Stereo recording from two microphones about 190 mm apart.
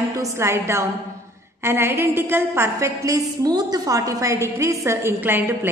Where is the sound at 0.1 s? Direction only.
15° right (ahead or behind).